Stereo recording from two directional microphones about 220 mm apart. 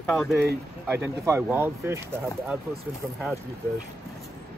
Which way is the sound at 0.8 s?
10° right (ahead or behind).